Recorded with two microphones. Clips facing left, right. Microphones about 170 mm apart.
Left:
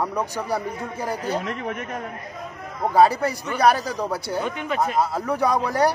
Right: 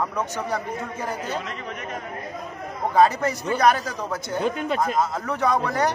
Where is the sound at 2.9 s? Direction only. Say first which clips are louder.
Left 1 dB; 10° left (ahead or behind).